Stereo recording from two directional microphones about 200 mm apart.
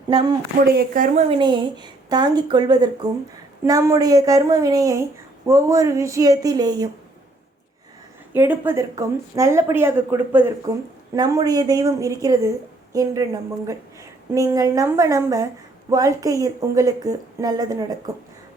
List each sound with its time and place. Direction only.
0.1 s a woman's voice: 25° right (ahead or behind)
0.7 s speech: 50° right (ahead or behind)
1.1 s a woman's voice: 25° right (ahead or behind)
8.3 s a woman's voice: 10° right (ahead or behind)